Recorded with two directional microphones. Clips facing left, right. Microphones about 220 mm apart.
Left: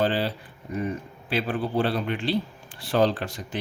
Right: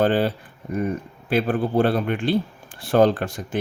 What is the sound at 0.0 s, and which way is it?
Speech, 50° right (ahead or behind).